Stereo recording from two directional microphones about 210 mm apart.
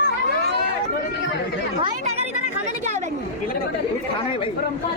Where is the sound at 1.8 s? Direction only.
30° right (ahead or behind).